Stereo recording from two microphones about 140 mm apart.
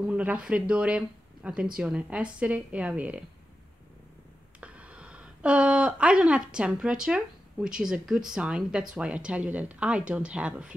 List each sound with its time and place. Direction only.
0.0 s speech: 10° right (ahead or behind)
4.6 s speech: 10° right (ahead or behind)